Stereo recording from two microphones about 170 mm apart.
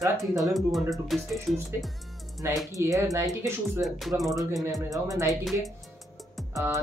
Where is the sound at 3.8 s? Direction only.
Centre (ahead or behind).